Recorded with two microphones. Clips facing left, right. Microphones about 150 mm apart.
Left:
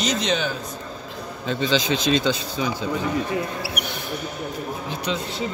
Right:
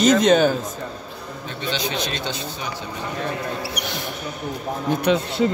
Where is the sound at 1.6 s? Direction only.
90° left.